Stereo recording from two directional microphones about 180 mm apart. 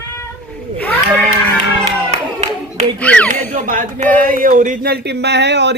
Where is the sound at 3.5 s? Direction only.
45° right (ahead or behind); by 5.7 s 70° right (ahead or behind).